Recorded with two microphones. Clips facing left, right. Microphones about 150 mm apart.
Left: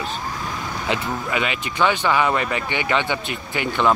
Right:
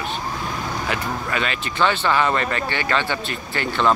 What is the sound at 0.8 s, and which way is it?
Speech, 15° left (ahead or behind).